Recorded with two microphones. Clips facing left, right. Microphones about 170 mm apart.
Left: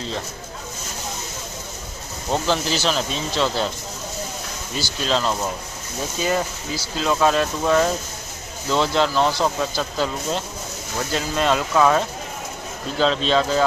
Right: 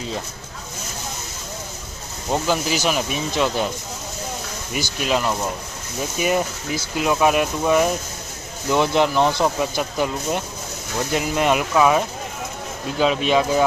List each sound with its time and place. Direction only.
2.3 s speech: 10° right (ahead or behind)
4.7 s speech: 15° right (ahead or behind)
6.1 s speech: 15° right (ahead or behind)